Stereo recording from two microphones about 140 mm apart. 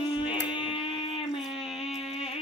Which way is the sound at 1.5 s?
45° left (ahead or behind).